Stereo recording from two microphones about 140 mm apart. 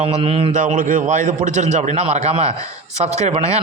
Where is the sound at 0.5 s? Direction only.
65° right (ahead or behind).